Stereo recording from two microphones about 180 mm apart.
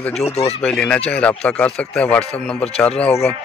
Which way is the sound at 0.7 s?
5° left (ahead or behind).